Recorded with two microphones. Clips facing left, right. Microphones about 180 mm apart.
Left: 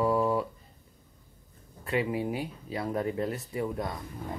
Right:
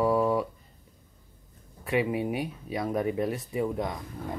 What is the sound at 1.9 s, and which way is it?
Speech, 20° right (ahead or behind).